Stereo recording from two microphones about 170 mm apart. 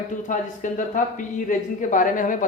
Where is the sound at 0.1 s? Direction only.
50° left (ahead or behind).